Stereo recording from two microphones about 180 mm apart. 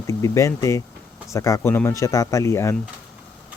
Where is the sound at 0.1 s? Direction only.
15° left (ahead or behind).